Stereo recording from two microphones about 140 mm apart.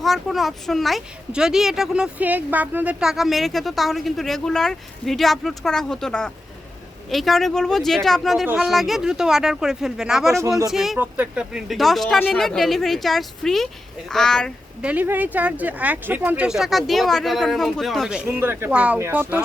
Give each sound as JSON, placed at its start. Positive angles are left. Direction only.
{"t": 0.0, "sound": "speech", "side_deg": 0}
{"t": 14.8, "sound": "speech", "side_deg": -10}
{"t": 16.5, "sound": "speech", "side_deg": 0}
{"t": 18.3, "sound": "speech", "side_deg": -15}